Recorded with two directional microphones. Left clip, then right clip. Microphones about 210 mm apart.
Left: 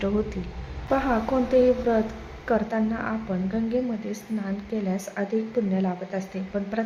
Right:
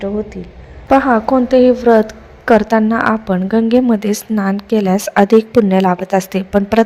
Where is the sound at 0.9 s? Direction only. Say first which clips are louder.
Right 13 dB; 40° right (ahead or behind).